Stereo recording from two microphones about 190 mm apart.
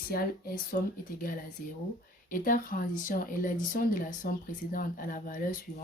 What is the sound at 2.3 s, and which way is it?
Speech, 45° left (ahead or behind).